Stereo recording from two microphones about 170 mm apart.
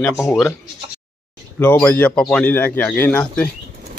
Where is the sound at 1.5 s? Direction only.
15° left (ahead or behind).